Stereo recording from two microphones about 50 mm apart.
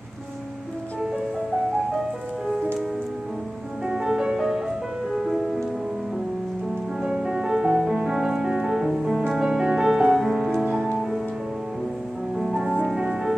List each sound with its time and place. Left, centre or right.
3.8 s music: centre
7.0 s music: centre
10.6 s music: right
12.8 s music: centre